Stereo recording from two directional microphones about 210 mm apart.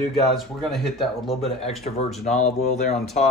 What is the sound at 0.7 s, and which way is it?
Speech, centre (ahead or behind).